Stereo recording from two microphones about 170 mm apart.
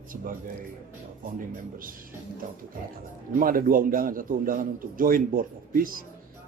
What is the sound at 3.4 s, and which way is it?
A man's voice, 55° right (ahead or behind).